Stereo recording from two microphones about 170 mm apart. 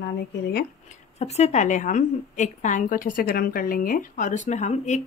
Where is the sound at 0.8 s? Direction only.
40° left (ahead or behind).